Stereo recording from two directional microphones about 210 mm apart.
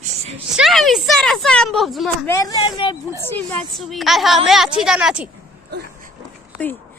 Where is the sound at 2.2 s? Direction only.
15° left (ahead or behind).